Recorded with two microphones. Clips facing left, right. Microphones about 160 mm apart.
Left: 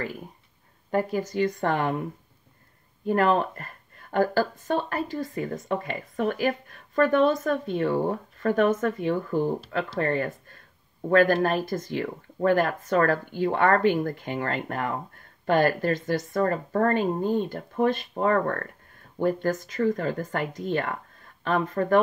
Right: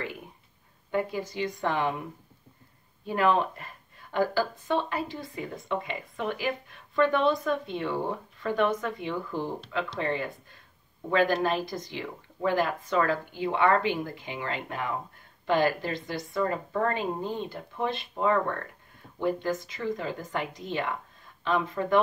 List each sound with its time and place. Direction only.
0.9 s speech: 45° left (ahead or behind)
3.1 s speech: 50° left (ahead or behind)